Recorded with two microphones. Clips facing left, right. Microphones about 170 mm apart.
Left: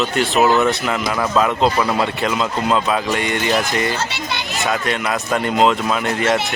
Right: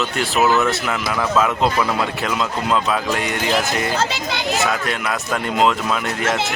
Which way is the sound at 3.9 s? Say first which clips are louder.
Right 3 dB; 90° right.